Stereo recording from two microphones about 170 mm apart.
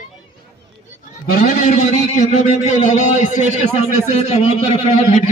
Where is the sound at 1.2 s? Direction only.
45° left (ahead or behind).